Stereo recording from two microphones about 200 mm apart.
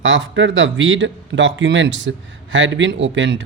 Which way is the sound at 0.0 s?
70° right (ahead or behind).